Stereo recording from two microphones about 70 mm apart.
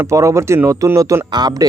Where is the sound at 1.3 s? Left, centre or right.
Right.